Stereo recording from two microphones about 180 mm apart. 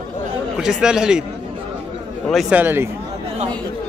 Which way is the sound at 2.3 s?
5° right (ahead or behind).